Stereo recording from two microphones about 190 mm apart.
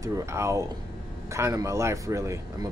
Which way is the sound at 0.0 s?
15° right (ahead or behind).